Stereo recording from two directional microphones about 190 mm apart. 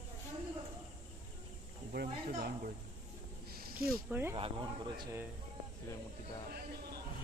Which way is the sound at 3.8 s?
10° right (ahead or behind).